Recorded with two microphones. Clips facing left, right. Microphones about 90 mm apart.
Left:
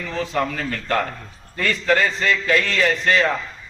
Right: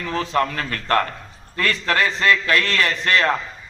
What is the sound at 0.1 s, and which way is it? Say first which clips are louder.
A man's voice: right 2 dB; 65° right (ahead or behind).